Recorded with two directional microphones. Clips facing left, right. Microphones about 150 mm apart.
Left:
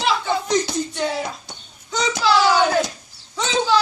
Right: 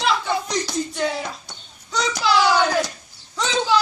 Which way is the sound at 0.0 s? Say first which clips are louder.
Left 1 dB; centre (ahead or behind).